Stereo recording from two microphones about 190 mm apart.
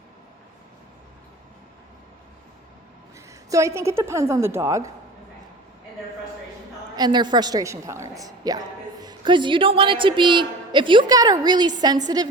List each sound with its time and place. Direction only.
3.5 s a woman's voice: 15° right (ahead or behind)
6.9 s a woman's voice: 20° right (ahead or behind)